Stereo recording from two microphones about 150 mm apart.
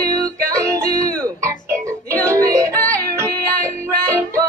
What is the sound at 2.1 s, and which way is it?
Music, 20° right (ahead or behind).